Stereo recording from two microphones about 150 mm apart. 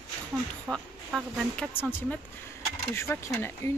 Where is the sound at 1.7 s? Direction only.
15° left (ahead or behind).